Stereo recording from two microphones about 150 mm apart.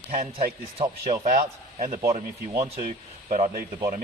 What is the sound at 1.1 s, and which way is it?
Speech, 50° right (ahead or behind).